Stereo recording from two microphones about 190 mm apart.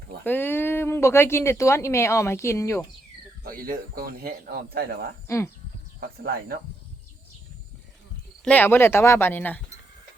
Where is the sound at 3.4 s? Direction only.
50° right (ahead or behind).